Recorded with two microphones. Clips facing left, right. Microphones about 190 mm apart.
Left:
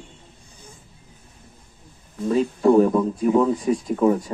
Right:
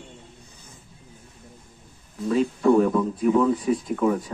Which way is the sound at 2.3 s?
35° left (ahead or behind).